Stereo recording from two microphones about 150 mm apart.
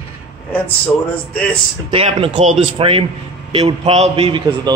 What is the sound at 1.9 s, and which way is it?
Speech, 40° right (ahead or behind).